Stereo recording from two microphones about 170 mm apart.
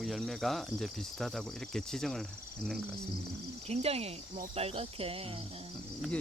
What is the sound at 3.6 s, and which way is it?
Cricket, 35° right (ahead or behind).